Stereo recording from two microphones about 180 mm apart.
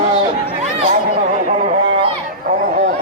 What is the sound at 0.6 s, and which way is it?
Chatter, 40° right (ahead or behind).